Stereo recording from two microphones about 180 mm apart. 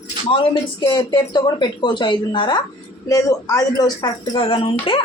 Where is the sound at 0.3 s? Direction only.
30° left (ahead or behind).